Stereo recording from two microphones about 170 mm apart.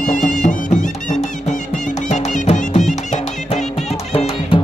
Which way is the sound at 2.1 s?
40° left (ahead or behind).